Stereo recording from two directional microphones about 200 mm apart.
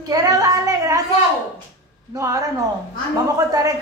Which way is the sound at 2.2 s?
15° right (ahead or behind).